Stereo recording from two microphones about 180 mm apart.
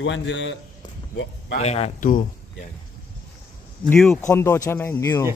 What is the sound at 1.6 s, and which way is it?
Speech, 35° left (ahead or behind).